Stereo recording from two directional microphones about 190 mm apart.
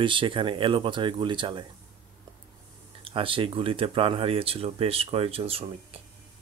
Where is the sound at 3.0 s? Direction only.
30° right (ahead or behind).